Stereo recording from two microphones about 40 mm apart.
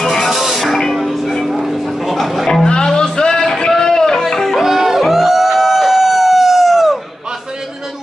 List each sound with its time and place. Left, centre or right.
0.0 s music: centre
0.3 s music: centre
1.4 s vehicle: centre
2.1 s music: centre
2.6 s music: centre
3.7 s a sound: centre
4.2 s music: centre
4.6 s music: centre